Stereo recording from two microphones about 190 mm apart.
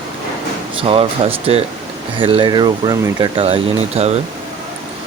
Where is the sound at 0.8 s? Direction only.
30° right (ahead or behind).